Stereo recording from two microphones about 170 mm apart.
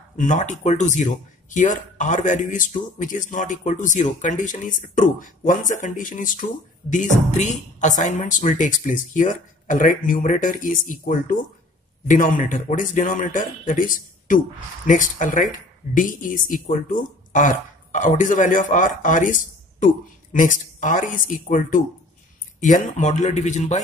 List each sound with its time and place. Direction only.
0.2 s speech: 45° left (ahead or behind)